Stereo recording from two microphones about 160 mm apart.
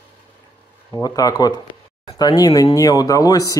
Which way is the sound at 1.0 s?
20° left (ahead or behind).